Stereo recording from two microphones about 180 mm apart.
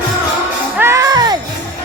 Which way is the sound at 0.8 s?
15° right (ahead or behind).